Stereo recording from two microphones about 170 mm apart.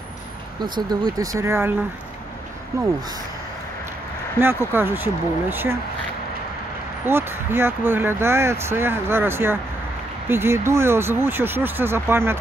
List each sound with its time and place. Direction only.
1.1 s speech: 20° right (ahead or behind)
2.7 s speech: 20° right (ahead or behind)
4.4 s speech: 15° right (ahead or behind)
7.1 s speech: 15° right (ahead or behind)